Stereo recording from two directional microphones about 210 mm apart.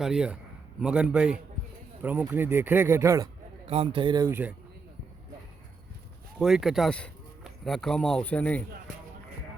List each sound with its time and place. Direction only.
0.0 s a man's voice: 5° right (ahead or behind)
3.7 s speech: 25° right (ahead or behind); by 4.5 s 10° right (ahead or behind)
6.4 s speech: centre (ahead or behind)